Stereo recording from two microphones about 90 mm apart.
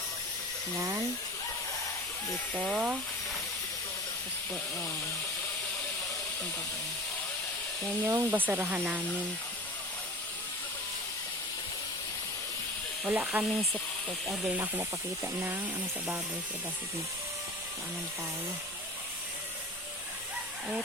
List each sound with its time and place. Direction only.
0.8 s speech: 25° right (ahead or behind)
2.7 s speech: 5° right (ahead or behind)
8.0 s speech: 40° right (ahead or behind)
8.3 s speech: 20° right (ahead or behind)
13.1 s speech: 20° right (ahead or behind)
13.4 s speech: centre (ahead or behind)
14.4 s speech: 20° right (ahead or behind)